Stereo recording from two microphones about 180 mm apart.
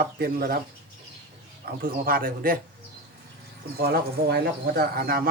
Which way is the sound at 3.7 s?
60° right (ahead or behind).